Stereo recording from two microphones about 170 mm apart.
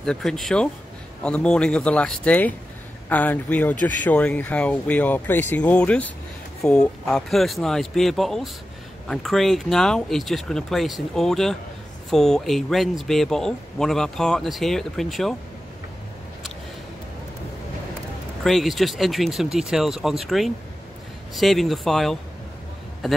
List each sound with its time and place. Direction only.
0.0 s speech: 5° left (ahead or behind)
18.4 s speech: centre (ahead or behind)